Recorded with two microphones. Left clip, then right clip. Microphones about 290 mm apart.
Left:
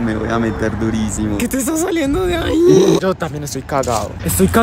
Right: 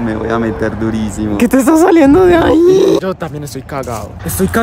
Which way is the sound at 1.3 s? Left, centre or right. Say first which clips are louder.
Right 11 dB; right.